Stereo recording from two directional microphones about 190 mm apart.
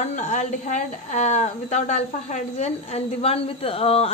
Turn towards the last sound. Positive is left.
turn(degrees=30)  # may be behind; listen again after turning